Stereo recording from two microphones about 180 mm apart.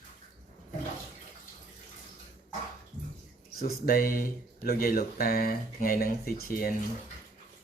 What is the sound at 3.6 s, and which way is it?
Speech, 55° left (ahead or behind).